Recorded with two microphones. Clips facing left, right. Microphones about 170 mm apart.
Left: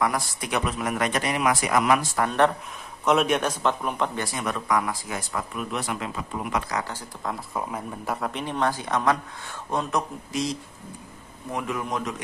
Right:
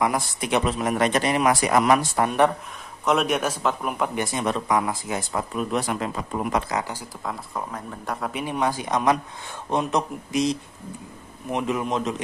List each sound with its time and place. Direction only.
0.0 s speech: 20° right (ahead or behind)
2.1 s a man's voice: 15° right (ahead or behind)
3.1 s a man's voice: centre (ahead or behind)
4.2 s speech: 25° right (ahead or behind)
6.7 s a man's voice: 15° right (ahead or behind)
7.2 s a man's voice: 5° left (ahead or behind)
8.3 s a man's voice: 10° right (ahead or behind)